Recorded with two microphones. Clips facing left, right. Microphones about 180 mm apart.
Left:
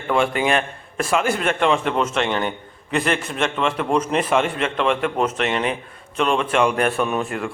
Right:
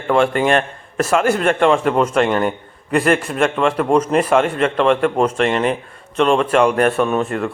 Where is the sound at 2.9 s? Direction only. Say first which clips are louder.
Right 6 dB; 45° right (ahead or behind).